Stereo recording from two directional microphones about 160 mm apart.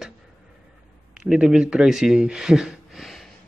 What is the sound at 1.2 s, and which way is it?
Speech, 5° right (ahead or behind).